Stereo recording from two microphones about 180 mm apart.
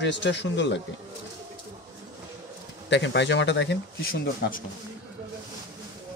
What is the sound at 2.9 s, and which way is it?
Speech, 80° left.